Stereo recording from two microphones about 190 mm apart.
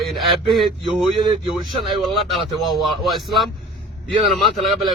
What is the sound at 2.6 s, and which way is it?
A man's voice, centre (ahead or behind).